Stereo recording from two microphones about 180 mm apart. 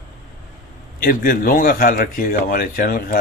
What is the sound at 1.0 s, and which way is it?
Speech, 50° left (ahead or behind).